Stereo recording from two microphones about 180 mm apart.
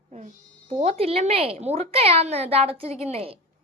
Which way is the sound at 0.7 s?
35° right (ahead or behind).